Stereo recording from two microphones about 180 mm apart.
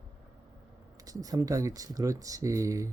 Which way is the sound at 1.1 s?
20° right (ahead or behind).